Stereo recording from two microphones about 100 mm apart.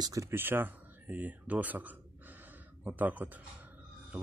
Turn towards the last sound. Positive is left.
turn(degrees=-15)  # may be behind; listen again after turning